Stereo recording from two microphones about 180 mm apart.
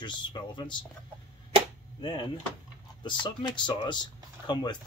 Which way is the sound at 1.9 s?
25° left (ahead or behind).